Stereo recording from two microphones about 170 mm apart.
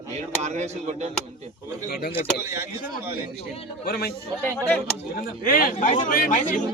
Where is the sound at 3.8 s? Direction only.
65° left (ahead or behind).